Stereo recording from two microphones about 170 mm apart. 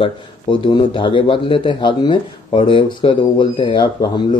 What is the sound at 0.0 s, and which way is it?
A man's voice, 30° left (ahead or behind).